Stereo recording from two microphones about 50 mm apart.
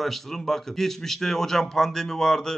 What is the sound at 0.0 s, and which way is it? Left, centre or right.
A man's voice, centre.